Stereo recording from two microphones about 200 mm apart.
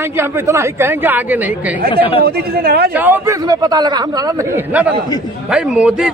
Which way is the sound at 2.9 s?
10° right (ahead or behind).